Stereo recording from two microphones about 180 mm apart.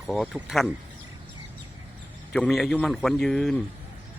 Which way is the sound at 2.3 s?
5° left (ahead or behind).